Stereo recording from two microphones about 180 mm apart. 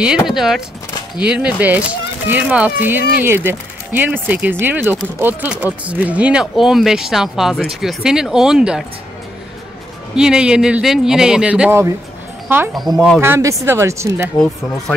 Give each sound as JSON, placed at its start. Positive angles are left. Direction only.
{"t": 0.3, "sound": "a man's voice", "side_deg": 0}
{"t": 10.1, "sound": "a man's voice", "side_deg": -5}
{"t": 12.9, "sound": "a man's voice", "side_deg": 0}
{"t": 13.2, "sound": "speech", "side_deg": -15}